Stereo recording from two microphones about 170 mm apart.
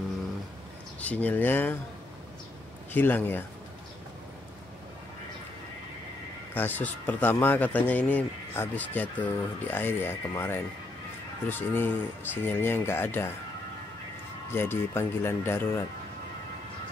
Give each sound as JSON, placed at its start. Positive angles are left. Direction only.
{"t": 1.0, "sound": "speech", "side_deg": 10}
{"t": 2.9, "sound": "speech", "side_deg": 10}
{"t": 6.5, "sound": "speech", "side_deg": 10}
{"t": 14.5, "sound": "speech", "side_deg": 15}